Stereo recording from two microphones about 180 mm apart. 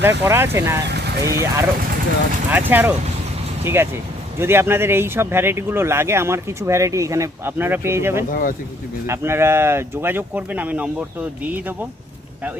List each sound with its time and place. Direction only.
0.3 s speech: 15° right (ahead or behind)
0.9 s vehicle: 65° right (ahead or behind)
1.2 s speech: 15° right (ahead or behind)
8.3 s speech: 50° left (ahead or behind)
9.0 s speech: 15° right (ahead or behind)